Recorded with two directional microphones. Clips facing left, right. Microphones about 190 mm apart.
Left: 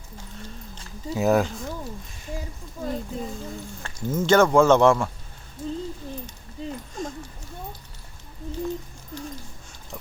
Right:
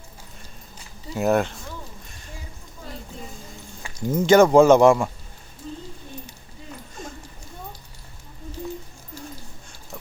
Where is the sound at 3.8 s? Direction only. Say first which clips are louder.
Right 3 dB; 15° right (ahead or behind).